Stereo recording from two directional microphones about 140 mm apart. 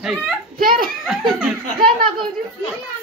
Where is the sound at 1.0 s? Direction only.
5° right (ahead or behind).